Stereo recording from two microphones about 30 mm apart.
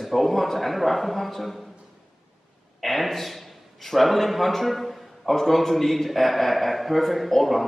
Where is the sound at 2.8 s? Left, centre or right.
Centre.